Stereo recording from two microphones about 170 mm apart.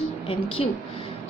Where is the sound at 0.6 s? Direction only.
35° left (ahead or behind).